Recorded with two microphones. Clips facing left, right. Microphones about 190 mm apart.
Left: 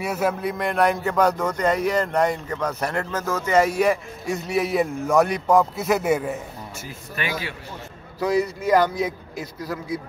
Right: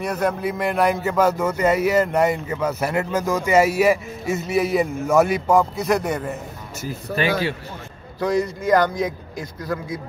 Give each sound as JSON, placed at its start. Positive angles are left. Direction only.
{"t": 0.0, "sound": "a man's voice", "side_deg": 5}
{"t": 7.2, "sound": "a man's voice", "side_deg": -30}
{"t": 8.2, "sound": "a man's voice", "side_deg": 5}